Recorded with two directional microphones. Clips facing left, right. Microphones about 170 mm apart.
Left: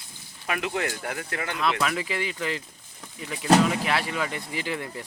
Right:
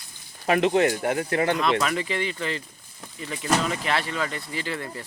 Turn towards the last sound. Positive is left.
turn(degrees=15)  # may be behind; listen again after turning